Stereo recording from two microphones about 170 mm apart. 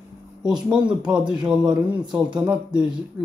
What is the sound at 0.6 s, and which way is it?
Speech, 5° right (ahead or behind).